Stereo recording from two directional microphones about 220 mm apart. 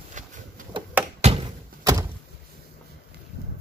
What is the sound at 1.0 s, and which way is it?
Thunk, 5° right (ahead or behind).